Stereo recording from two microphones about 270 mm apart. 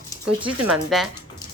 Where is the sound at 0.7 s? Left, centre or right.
Centre.